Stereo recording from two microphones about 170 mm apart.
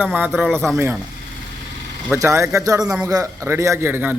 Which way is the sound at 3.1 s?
20° right (ahead or behind).